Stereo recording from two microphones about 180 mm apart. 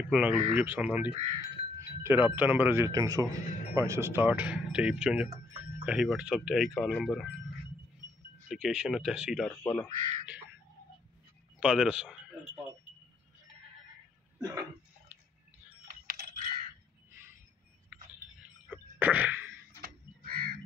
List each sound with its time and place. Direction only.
0.1 s speech: 10° right (ahead or behind)
8.5 s speech: centre (ahead or behind)
9.5 s speech: 10° left (ahead or behind)
9.9 s speech: 45° right (ahead or behind)
11.6 s speech: 5° right (ahead or behind)
16.1 s computer keyboard: 55° right (ahead or behind)
18.7 s sneeze: 10° right (ahead or behind)
19.8 s a sound: 55° right (ahead or behind)